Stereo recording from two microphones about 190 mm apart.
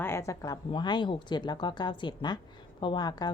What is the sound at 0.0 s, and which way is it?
A woman's voice, 15° left (ahead or behind).